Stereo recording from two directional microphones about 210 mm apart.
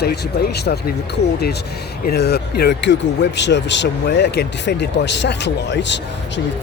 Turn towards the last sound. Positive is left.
turn(degrees=55)  # may be behind; listen again after turning